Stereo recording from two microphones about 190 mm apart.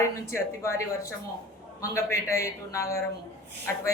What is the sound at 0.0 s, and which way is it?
Speech, 15° left (ahead or behind).